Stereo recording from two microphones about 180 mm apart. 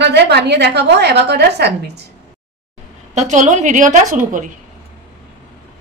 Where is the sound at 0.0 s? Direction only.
65° right (ahead or behind).